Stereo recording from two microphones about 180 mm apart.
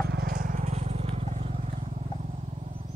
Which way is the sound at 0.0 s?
55° right (ahead or behind).